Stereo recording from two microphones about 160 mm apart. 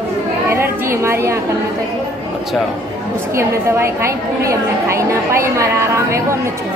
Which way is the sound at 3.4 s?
15° right (ahead or behind).